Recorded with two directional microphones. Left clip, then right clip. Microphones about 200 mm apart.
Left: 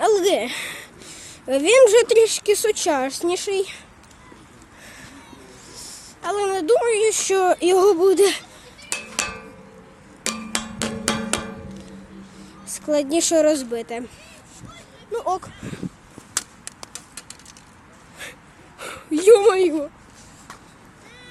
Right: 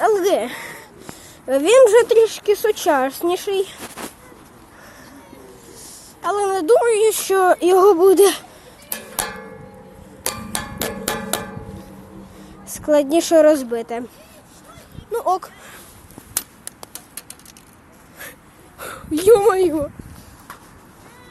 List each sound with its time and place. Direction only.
0.0 s a sound: 10° left (ahead or behind)
0.6 s wheeze: 20° left (ahead or behind)
1.5 s speech: 5° left (ahead or behind)
5.7 s a woman's voice: centre (ahead or behind)
10.2 s a sound: 10° right (ahead or behind)
12.6 s speech: 10° right (ahead or behind)
15.1 s speech: 25° right (ahead or behind)
16.6 s tick-tock: centre (ahead or behind)
18.8 s a sound: centre (ahead or behind)
19.2 s speech: 5° left (ahead or behind)